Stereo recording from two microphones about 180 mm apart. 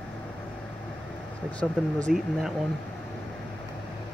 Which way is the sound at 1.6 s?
Centre (ahead or behind).